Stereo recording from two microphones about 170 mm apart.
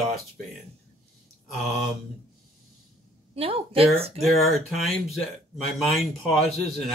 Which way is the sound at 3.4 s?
35° right (ahead or behind).